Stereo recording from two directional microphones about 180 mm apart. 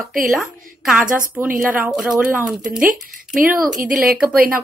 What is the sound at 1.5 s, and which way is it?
Speech, 50° right (ahead or behind).